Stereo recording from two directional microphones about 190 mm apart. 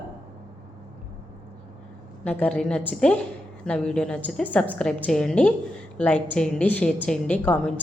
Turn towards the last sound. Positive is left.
turn(degrees=5)  # may be behind; listen again after turning